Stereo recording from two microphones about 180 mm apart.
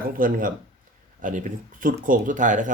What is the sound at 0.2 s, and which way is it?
Speech, 50° right (ahead or behind).